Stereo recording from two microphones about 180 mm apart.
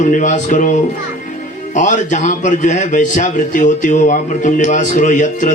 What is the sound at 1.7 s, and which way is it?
Music, 45° left (ahead or behind).